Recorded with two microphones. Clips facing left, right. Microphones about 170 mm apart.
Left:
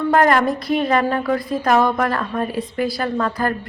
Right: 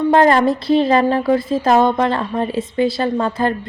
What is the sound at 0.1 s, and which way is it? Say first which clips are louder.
A woman's voice: right 3 dB; 25° right (ahead or behind).